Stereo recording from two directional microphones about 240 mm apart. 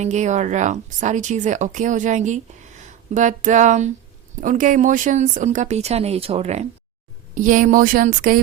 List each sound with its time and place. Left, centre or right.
0.0 s speech: right